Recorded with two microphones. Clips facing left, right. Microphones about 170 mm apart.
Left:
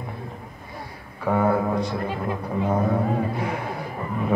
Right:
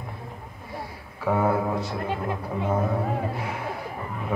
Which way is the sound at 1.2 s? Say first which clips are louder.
Left 2 dB; 5° right (ahead or behind).